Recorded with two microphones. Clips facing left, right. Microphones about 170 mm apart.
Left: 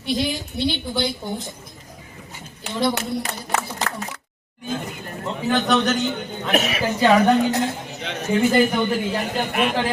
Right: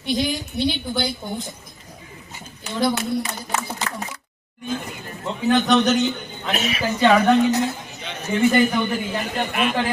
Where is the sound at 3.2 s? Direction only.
65° left (ahead or behind).